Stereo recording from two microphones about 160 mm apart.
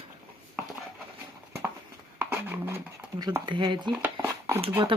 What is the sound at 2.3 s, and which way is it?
Speech, 15° right (ahead or behind).